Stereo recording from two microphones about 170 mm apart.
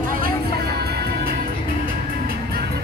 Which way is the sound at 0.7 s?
65° right (ahead or behind).